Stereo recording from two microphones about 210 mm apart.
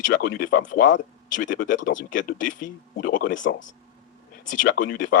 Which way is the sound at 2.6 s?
40° left (ahead or behind).